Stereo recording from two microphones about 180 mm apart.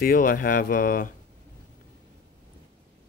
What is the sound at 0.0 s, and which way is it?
Speech, 50° left (ahead or behind).